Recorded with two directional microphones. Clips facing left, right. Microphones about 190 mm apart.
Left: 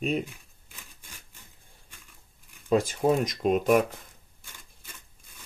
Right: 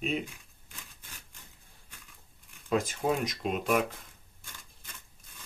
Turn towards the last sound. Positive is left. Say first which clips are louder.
# left 6 dB
turn(degrees=45)  # may be behind; listen again after turning